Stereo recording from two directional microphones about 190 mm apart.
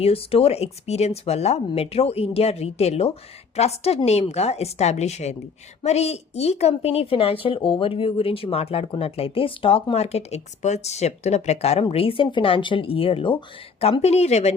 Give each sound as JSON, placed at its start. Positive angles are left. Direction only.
{"t": 0.0, "sound": "a woman's voice", "side_deg": 30}